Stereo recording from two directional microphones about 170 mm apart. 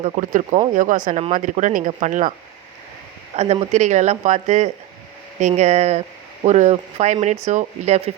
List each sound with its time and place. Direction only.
0.0 s speech: 45° right (ahead or behind)
3.3 s speech: 40° right (ahead or behind)